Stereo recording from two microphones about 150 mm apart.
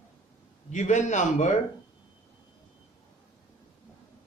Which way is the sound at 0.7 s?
50° left (ahead or behind).